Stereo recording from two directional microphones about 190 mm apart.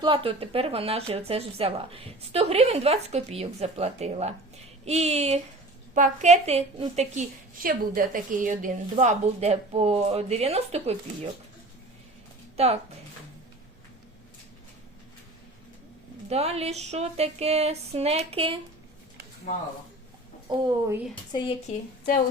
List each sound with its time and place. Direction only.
0.0 s speech: 25° right (ahead or behind)
12.5 s speech: 35° right (ahead or behind)
16.3 s speech: 35° right (ahead or behind)
20.5 s a woman's voice: 20° right (ahead or behind)
21.7 s speech: 50° left (ahead or behind)